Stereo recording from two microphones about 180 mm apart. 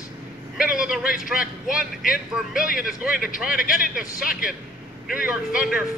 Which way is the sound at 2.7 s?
55° left (ahead or behind).